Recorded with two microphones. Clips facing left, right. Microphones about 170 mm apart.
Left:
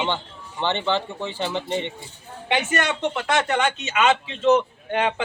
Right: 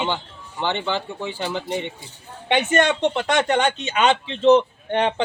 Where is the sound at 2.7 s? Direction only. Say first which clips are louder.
Right 5 dB; 25° right (ahead or behind).